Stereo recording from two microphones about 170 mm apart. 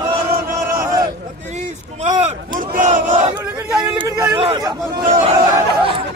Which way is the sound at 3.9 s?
25° right (ahead or behind).